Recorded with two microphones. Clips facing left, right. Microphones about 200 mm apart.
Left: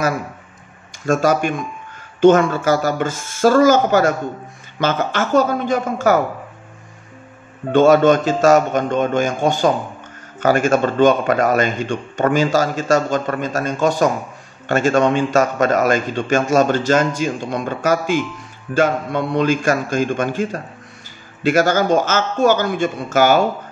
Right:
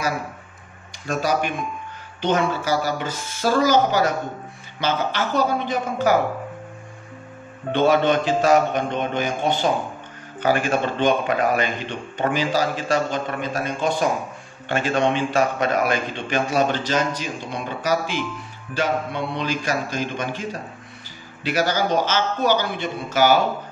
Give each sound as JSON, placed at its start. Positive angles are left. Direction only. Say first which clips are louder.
{"t": 1.0, "sound": "a man's voice", "louder": "left 6 dB", "side_deg": 50}
{"t": 7.7, "sound": "a man's voice", "louder": "left 6 dB", "side_deg": 45}